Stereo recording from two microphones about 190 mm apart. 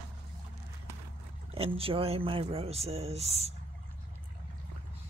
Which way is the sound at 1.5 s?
30° right (ahead or behind).